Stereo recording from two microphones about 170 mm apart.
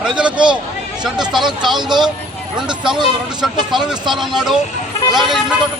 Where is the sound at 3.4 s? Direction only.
Centre (ahead or behind).